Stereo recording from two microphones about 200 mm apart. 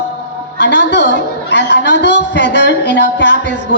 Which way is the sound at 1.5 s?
60° left (ahead or behind).